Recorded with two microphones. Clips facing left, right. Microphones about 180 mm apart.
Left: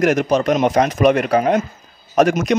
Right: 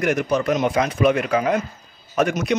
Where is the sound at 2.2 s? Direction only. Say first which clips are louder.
Left 6 dB; 90° left.